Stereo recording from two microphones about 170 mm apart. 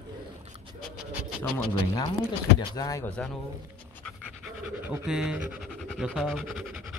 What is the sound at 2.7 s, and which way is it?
Speech, 20° left (ahead or behind).